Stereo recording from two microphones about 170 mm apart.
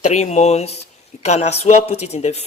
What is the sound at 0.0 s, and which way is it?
Speech, 40° left (ahead or behind).